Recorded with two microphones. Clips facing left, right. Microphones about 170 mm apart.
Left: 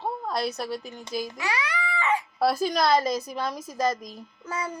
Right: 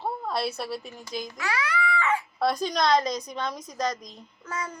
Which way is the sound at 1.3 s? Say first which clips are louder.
Right 1 dB; 15° left (ahead or behind).